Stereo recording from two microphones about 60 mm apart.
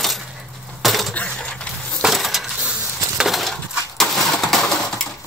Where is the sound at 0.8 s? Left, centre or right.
Centre.